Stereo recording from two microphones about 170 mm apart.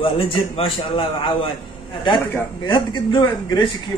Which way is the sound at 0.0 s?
30° left (ahead or behind).